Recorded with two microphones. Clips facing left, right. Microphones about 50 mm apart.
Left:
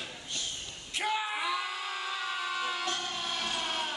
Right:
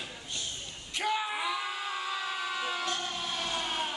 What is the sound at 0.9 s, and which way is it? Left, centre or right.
Yell, centre.